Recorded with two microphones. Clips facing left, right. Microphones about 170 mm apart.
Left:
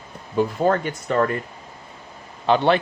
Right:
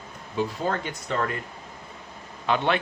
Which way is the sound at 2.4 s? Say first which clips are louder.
Left 6 dB; 30° left (ahead or behind).